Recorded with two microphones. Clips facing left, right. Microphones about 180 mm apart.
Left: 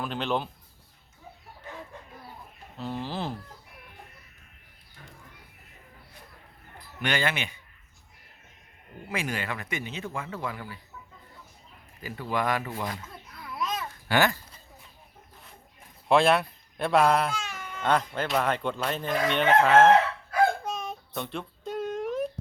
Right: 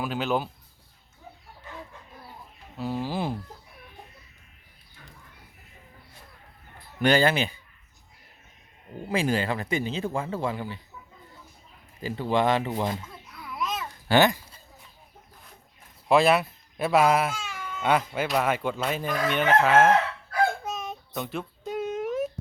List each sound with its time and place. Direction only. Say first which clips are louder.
0.0 s speech: right 2 dB; 5° right (ahead or behind)
2.7 s speech: right 4 dB; 10° right (ahead or behind)
7.0 s speech: right 7 dB; 35° right (ahead or behind)
9.0 s speech: right 7 dB; 30° right (ahead or behind)
12.0 s speech: right 5 dB; 30° right (ahead or behind)
13.2 s babbling: even; centre (ahead or behind)
14.1 s speech: right 4 dB; 20° right (ahead or behind)
16.0 s speech: right 1 dB; centre (ahead or behind)
20.7 s child singing: even; centre (ahead or behind)